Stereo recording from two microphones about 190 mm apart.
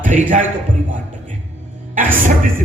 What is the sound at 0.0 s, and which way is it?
Speech, 45° right (ahead or behind).